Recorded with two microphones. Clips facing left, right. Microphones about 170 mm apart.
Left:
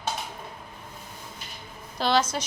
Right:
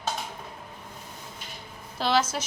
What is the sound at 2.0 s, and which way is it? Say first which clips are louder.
Speech: left 1 dB; 5° right (ahead or behind).